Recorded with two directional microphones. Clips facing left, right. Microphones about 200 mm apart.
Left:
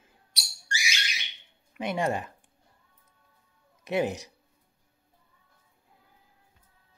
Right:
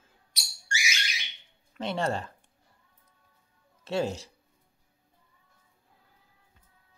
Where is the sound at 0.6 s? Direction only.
35° left (ahead or behind).